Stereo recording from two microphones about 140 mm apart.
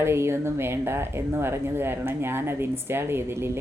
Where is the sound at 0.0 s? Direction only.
20° right (ahead or behind).